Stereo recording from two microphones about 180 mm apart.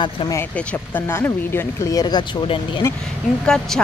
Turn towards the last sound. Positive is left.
turn(degrees=5)  # may be behind; listen again after turning